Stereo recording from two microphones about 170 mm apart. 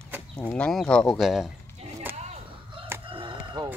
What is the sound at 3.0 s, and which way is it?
Chicken, 30° right (ahead or behind).